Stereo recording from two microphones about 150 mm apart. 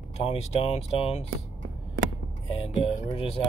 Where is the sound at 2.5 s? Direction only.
35° left (ahead or behind).